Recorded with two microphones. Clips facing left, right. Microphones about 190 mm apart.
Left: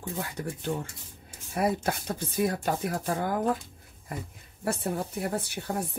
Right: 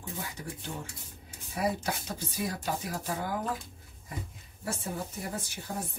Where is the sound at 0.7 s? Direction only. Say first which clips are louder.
Left 8 dB; 60° left (ahead or behind).